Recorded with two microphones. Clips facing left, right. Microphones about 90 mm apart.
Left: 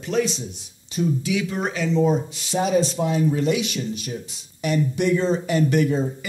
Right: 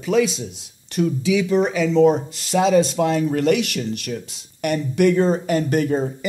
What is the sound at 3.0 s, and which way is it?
Speech, 70° right (ahead or behind).